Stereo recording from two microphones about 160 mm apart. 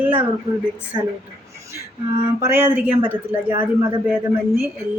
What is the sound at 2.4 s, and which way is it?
Speech, 15° right (ahead or behind).